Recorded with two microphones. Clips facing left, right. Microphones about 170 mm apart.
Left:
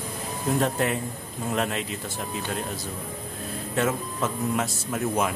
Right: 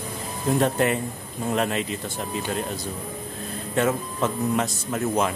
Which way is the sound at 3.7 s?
Centre (ahead or behind).